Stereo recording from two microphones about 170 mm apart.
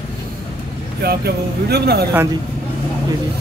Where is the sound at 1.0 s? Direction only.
70° right (ahead or behind).